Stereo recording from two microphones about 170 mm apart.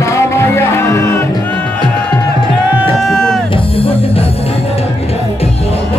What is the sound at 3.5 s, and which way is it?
Speech, 30° left (ahead or behind).